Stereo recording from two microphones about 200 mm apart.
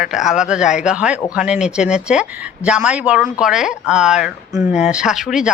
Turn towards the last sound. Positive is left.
turn(degrees=0)  # may be behind; listen again after turning